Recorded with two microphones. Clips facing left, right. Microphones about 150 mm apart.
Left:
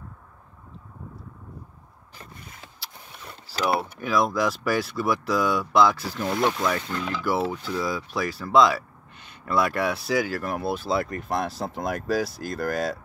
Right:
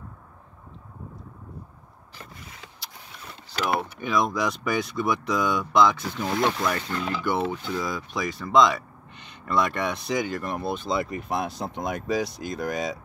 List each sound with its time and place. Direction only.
3.5 s mechanisms: 40° left (ahead or behind)
4.0 s speech: centre (ahead or behind)